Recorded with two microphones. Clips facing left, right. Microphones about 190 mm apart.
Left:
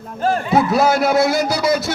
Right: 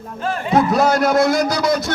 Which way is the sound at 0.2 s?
40° left (ahead or behind).